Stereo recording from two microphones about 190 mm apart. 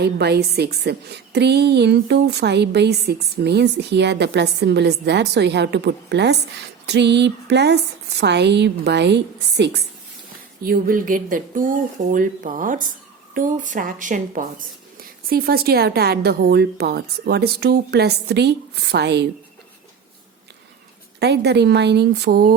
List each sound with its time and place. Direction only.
0.0 s a woman's voice: 60° right (ahead or behind)
10.6 s a woman's voice: 50° right (ahead or behind)
21.2 s a woman's voice: 60° right (ahead or behind)